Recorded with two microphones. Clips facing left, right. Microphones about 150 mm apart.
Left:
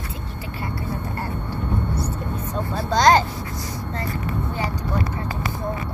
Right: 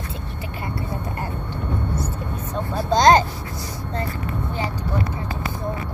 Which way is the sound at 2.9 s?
20° right (ahead or behind).